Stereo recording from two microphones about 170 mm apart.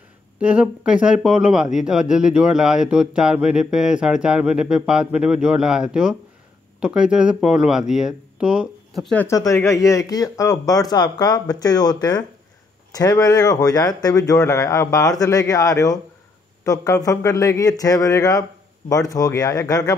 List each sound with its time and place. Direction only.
0.4 s speech: 5° right (ahead or behind)
9.1 s speech: 10° left (ahead or behind)